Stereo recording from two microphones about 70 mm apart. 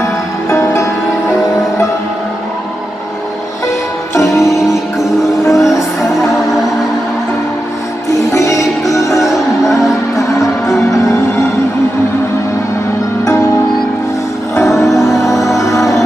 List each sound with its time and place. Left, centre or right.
0.5 s music: left
3.6 s music: left
5.5 s music: centre
8.3 s music: left
9.2 s music: centre
13.2 s music: left
14.6 s music: centre
15.5 s music: left